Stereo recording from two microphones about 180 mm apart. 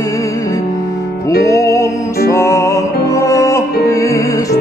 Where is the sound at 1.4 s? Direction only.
15° left (ahead or behind).